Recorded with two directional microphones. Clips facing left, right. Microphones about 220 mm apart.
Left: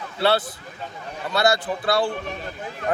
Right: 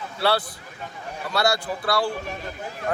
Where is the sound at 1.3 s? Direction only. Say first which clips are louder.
Left 3 dB; 20° left (ahead or behind).